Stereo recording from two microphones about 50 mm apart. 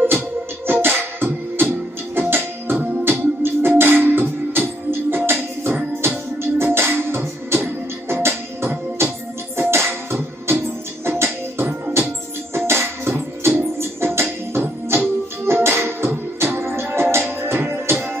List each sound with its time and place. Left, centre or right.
0.7 s music: right